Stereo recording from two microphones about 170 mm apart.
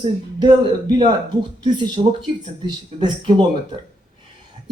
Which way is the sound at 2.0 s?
45° right (ahead or behind).